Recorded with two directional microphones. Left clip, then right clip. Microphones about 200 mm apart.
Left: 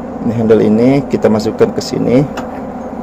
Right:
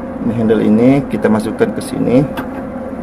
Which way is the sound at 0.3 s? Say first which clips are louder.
Left 3 dB; 15° left (ahead or behind).